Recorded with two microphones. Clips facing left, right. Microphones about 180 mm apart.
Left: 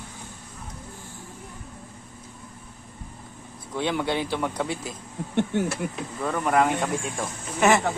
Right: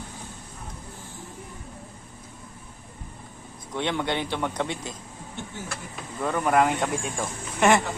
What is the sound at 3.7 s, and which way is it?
Speech, 5° left (ahead or behind).